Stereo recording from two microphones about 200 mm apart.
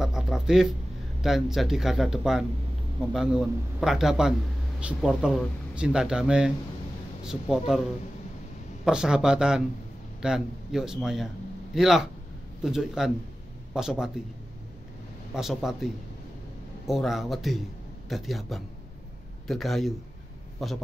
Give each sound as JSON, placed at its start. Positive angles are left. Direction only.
{"t": 0.0, "sound": "a sound", "side_deg": 0}
{"t": 1.2, "sound": "speech", "side_deg": 0}
{"t": 8.8, "sound": "speech", "side_deg": -5}
{"t": 15.3, "sound": "a man's voice", "side_deg": 0}